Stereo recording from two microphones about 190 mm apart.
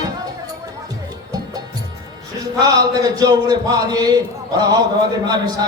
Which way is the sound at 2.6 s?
20° right (ahead or behind).